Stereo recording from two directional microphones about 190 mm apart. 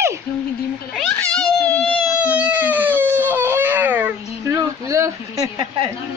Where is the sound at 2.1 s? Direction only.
5° right (ahead or behind).